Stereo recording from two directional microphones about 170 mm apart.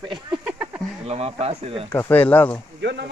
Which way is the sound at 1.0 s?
35° right (ahead or behind).